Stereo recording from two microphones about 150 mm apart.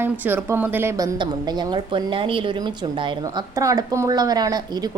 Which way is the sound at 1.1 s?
30° right (ahead or behind).